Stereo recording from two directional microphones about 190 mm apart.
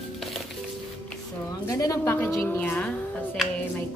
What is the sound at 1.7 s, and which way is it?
A woman's voice, 15° left (ahead or behind).